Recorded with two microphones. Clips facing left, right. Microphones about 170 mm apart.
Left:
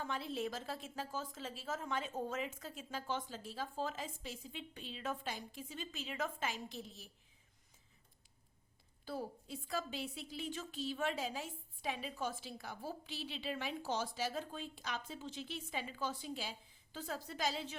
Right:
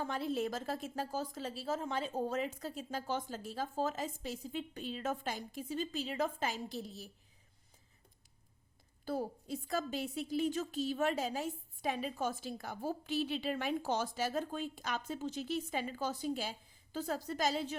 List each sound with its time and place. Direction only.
0.0 s a woman's voice: 40° right (ahead or behind)
9.0 s a woman's voice: 45° right (ahead or behind)